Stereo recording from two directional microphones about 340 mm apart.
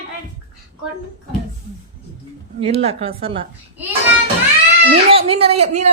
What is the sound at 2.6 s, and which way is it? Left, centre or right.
Speech, centre.